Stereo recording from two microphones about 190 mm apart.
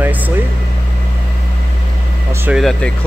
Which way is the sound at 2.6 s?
5° left (ahead or behind).